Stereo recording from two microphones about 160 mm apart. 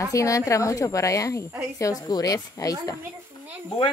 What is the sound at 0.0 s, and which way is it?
Speech, 20° left (ahead or behind).